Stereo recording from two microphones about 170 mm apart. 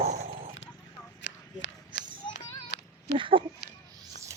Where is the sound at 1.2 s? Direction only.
90° left.